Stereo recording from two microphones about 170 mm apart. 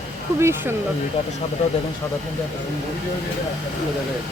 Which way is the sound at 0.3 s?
15° right (ahead or behind).